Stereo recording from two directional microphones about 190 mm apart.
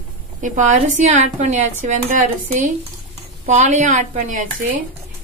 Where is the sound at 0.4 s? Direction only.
40° right (ahead or behind).